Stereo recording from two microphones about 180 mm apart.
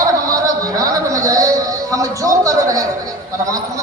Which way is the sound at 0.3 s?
20° right (ahead or behind).